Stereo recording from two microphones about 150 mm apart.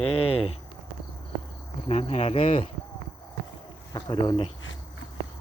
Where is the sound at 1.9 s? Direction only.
45° left (ahead or behind).